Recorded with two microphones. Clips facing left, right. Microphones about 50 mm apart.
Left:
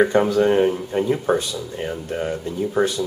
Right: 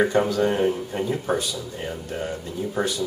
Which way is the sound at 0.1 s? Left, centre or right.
Centre.